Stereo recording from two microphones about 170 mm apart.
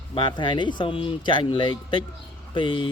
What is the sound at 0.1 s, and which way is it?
Speech, 30° left (ahead or behind).